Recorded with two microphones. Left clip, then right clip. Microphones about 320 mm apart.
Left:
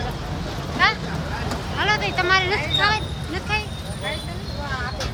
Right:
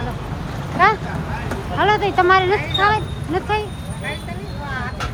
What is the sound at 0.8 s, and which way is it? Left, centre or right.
Vehicle, centre.